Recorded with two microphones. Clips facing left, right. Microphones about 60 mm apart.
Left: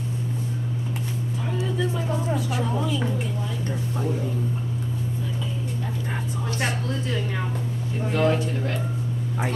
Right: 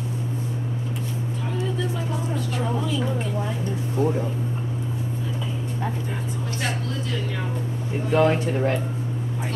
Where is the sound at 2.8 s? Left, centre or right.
Centre.